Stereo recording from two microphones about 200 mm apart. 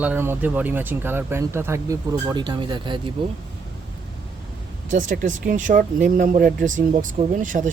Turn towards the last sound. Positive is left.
turn(degrees=-40)  # may be behind; listen again after turning